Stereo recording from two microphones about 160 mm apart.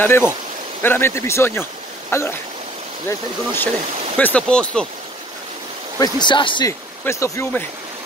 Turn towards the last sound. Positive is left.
turn(degrees=15)  # may be behind; listen again after turning